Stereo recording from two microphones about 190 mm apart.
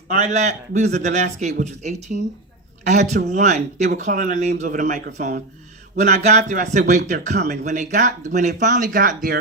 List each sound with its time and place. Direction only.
0.1 s a man's voice: 40° right (ahead or behind)